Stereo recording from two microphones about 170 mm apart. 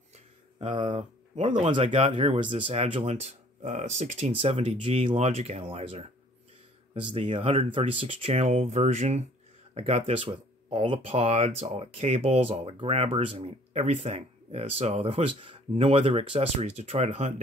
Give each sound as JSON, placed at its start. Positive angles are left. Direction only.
{"t": 0.1, "sound": "a sound", "side_deg": -30}
{"t": 1.7, "sound": "speech", "side_deg": -30}
{"t": 7.1, "sound": "speech", "side_deg": -30}